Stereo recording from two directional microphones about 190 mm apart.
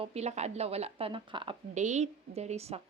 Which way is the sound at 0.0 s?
35° right (ahead or behind).